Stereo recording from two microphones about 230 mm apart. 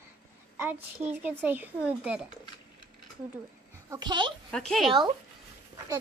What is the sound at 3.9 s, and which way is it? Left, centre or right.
Speech, centre.